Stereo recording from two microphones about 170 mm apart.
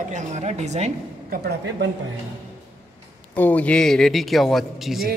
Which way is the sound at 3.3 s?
10° left (ahead or behind).